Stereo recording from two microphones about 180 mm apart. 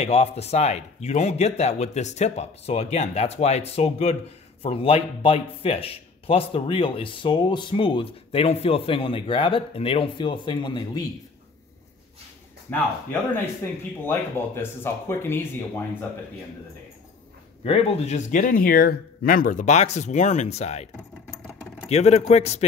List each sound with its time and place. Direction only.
0.0 s a man's voice: 35° left (ahead or behind)
12.7 s speech: 10° left (ahead or behind)
17.6 s speech: 30° left (ahead or behind)